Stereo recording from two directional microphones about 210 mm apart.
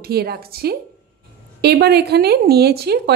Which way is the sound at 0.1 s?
50° right (ahead or behind).